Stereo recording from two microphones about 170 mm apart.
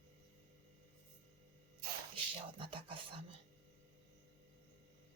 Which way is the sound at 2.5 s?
30° right (ahead or behind).